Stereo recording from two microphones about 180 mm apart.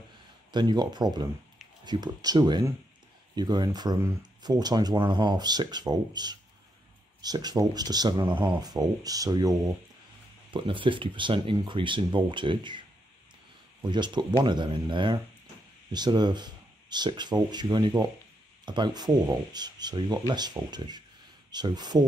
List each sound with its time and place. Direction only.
0.5 s speech: 25° right (ahead or behind)
13.8 s speech: 25° right (ahead or behind)